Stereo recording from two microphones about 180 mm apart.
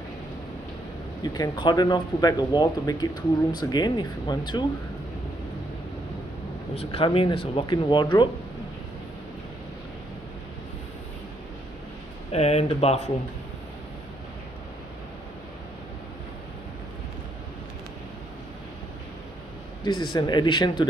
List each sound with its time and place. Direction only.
1.2 s speech: 25° left (ahead or behind)
6.7 s speech: 35° left (ahead or behind)
12.3 s speech: 35° left (ahead or behind)
19.8 s speech: 25° left (ahead or behind)